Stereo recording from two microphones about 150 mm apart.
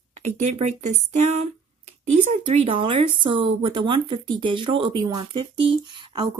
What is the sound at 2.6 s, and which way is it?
Speech, 40° right (ahead or behind).